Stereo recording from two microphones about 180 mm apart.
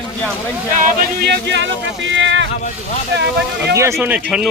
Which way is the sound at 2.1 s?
90° right.